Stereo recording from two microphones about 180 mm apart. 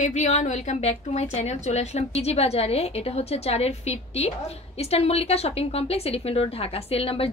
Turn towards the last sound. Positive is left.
turn(degrees=30)  # may be behind; listen again after turning